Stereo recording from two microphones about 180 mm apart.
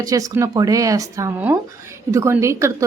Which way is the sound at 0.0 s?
20° right (ahead or behind).